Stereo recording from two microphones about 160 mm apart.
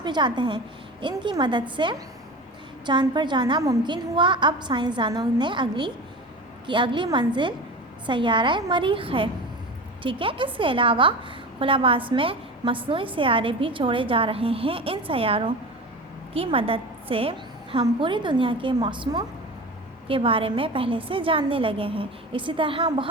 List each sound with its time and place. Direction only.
0.0 s a woman's voice: 30° right (ahead or behind)